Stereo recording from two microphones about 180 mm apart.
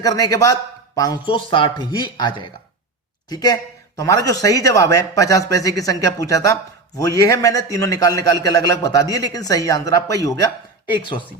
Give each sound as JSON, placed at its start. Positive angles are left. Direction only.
{"t": 0.0, "sound": "a man's voice", "side_deg": 20}